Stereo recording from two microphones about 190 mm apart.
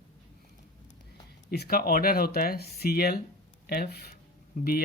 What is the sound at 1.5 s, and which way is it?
Speech, 55° left (ahead or behind).